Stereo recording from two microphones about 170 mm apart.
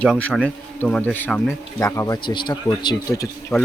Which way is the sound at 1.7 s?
20° left (ahead or behind).